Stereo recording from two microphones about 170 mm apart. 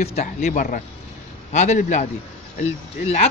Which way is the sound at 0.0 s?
40° left (ahead or behind).